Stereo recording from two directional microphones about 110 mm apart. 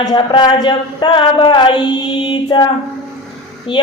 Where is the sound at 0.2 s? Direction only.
45° left (ahead or behind).